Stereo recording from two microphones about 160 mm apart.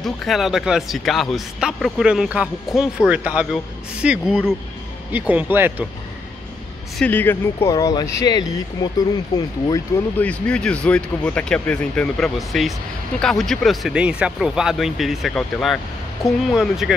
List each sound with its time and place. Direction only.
0.0 s speech: centre (ahead or behind)
7.0 s speech: 10° left (ahead or behind)
10.1 s speech: 10° left (ahead or behind)